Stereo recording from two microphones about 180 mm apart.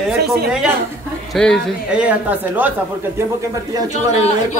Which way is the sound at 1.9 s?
5° right (ahead or behind).